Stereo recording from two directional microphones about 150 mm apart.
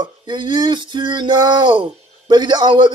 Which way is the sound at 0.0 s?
30° right (ahead or behind).